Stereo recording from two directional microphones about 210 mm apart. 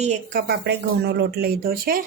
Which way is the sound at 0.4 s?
50° right (ahead or behind).